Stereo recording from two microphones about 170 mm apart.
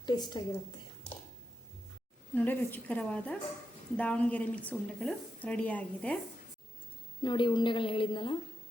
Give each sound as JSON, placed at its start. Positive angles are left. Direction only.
{"t": 0.0, "sound": "a woman's voice", "side_deg": 25}
{"t": 2.3, "sound": "a woman's voice", "side_deg": 10}
{"t": 7.2, "sound": "a woman's voice", "side_deg": 30}